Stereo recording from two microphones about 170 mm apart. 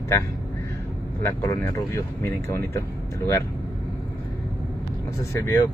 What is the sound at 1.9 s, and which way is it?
Speech, 15° left (ahead or behind).